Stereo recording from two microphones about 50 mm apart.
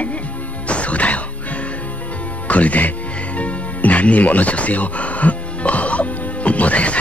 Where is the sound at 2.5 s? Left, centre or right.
Left.